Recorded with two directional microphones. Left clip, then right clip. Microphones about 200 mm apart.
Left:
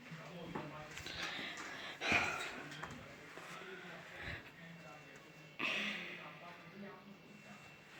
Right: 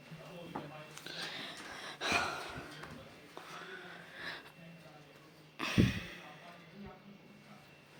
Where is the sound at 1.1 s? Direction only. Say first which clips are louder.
Right 1 dB; 25° right (ahead or behind).